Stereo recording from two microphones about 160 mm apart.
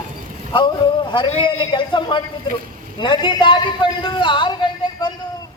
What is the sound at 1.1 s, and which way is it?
A man's voice, 30° left (ahead or behind).